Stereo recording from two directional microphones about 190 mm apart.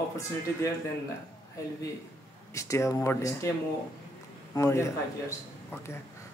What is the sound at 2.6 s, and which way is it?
Speech, 15° left (ahead or behind).